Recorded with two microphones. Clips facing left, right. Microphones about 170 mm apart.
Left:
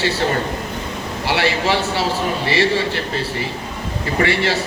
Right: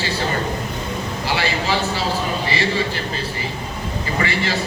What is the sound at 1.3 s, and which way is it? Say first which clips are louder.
A man's voice: left 4 dB; 70° left (ahead or behind).